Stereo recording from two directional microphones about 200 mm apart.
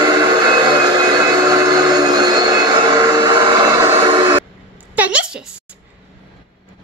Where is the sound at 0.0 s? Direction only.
20° right (ahead or behind).